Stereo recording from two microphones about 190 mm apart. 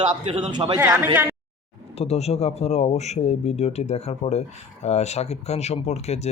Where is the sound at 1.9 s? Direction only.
35° left (ahead or behind).